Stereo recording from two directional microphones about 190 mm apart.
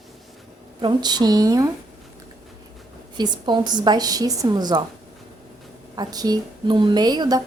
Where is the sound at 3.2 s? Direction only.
25° right (ahead or behind).